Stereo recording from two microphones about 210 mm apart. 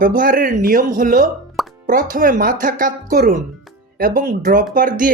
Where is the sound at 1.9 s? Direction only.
40° right (ahead or behind).